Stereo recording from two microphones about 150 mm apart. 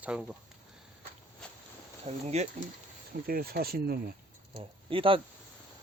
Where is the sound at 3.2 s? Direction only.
85° right.